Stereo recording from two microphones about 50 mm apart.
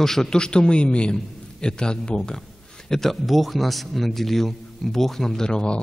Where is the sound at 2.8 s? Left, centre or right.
Centre.